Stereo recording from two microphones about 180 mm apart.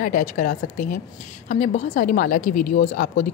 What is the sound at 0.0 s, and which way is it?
A woman's voice, 50° left (ahead or behind).